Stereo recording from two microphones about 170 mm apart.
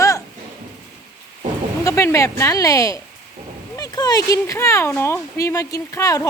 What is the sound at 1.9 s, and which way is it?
Speech, 20° left (ahead or behind).